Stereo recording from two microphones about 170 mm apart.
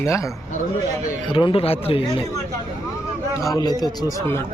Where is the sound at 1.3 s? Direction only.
30° left (ahead or behind).